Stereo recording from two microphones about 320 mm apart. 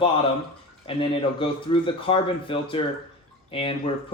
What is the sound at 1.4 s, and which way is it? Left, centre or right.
Speech, centre.